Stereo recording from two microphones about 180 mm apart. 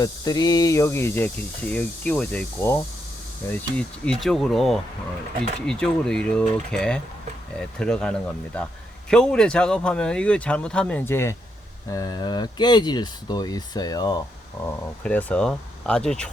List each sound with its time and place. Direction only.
0.0 s speech: 20° left (ahead or behind)
14.6 s speech: 10° left (ahead or behind)